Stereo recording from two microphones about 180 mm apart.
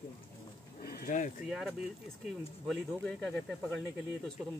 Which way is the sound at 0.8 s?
55° left (ahead or behind).